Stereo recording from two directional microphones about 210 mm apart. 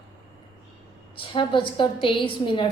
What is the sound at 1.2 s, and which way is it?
A woman's voice, 25° left (ahead or behind).